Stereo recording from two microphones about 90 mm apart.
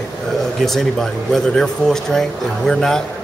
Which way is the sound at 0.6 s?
5° left (ahead or behind).